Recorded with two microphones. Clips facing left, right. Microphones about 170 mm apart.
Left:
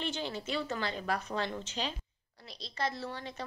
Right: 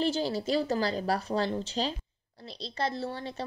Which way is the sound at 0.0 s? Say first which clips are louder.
Right 8 dB; 35° right (ahead or behind).